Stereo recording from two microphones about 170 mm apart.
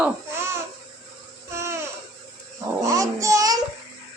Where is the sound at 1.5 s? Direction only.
15° right (ahead or behind).